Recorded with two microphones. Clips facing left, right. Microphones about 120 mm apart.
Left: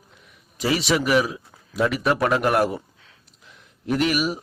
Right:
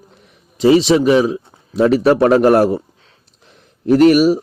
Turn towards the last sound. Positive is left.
turn(degrees=-40)  # may be behind; listen again after turning